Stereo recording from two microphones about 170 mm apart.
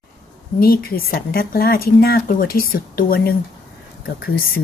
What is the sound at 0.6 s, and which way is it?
Speech, 65° left (ahead or behind).